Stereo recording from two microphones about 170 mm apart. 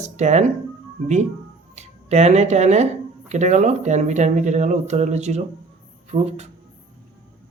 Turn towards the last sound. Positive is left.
turn(degrees=-40)  # may be behind; listen again after turning